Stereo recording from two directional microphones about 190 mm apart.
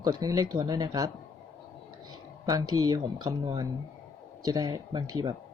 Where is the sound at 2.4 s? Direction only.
20° right (ahead or behind).